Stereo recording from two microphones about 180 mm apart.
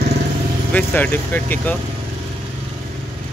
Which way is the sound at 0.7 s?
10° left (ahead or behind).